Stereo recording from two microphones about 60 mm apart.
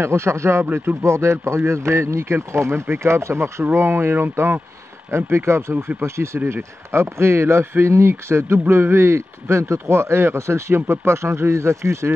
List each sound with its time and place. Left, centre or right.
0.0 s speech: right